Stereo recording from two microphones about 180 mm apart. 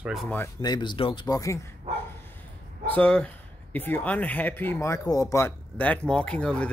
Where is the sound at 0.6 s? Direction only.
25° left (ahead or behind).